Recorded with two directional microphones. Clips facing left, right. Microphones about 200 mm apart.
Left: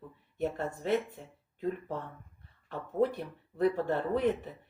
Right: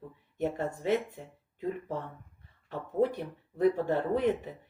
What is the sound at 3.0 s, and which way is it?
Speech, 15° right (ahead or behind).